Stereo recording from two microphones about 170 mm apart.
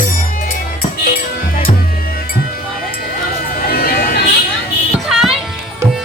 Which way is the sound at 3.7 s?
60° left (ahead or behind).